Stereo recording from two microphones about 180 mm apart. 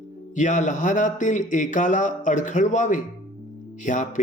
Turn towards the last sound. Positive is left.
turn(degrees=45)  # may be behind; listen again after turning